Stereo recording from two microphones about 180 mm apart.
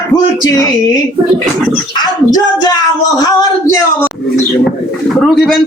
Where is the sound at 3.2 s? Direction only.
20° left (ahead or behind).